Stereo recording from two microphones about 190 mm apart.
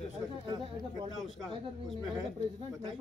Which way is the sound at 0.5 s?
25° right (ahead or behind).